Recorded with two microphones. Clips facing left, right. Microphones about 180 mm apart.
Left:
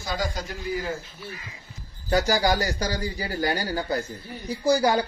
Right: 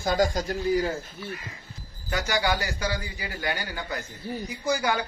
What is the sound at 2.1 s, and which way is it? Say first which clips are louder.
A man's voice: left 5 dB; 35° left (ahead or behind).